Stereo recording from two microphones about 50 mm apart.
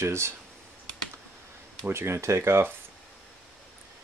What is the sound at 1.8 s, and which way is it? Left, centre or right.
Speech, right.